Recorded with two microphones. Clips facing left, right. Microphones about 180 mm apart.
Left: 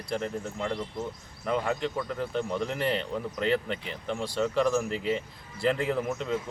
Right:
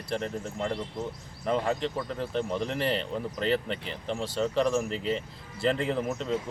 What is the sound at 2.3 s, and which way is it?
Speech, centre (ahead or behind).